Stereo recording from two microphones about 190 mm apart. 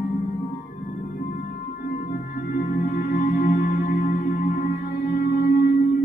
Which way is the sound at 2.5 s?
50° left (ahead or behind).